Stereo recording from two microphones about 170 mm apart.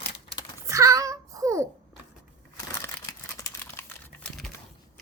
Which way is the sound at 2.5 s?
20° left (ahead or behind).